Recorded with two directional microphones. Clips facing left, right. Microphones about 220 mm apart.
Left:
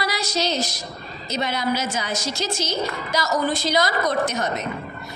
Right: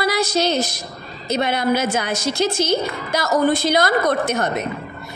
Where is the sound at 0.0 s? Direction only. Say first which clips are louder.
Right 6 dB; 55° right (ahead or behind).